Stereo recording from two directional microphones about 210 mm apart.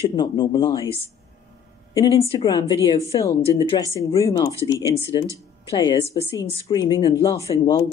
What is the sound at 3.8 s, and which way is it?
Speech, 15° right (ahead or behind).